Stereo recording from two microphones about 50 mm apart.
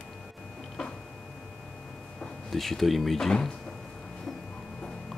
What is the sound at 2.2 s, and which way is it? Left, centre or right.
Speech, centre.